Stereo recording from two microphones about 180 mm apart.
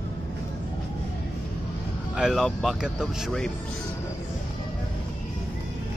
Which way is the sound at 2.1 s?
Centre (ahead or behind).